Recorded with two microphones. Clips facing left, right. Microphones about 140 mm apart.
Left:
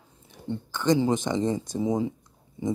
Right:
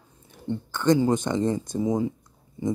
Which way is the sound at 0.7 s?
20° left (ahead or behind).